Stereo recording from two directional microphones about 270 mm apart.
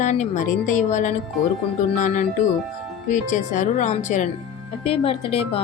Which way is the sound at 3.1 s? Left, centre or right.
Left.